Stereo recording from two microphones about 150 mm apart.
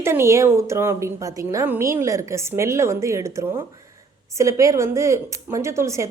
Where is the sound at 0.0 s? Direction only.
15° right (ahead or behind).